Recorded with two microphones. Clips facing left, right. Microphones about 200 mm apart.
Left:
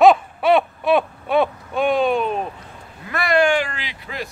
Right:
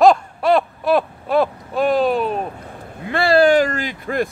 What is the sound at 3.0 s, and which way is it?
Speech, 30° right (ahead or behind).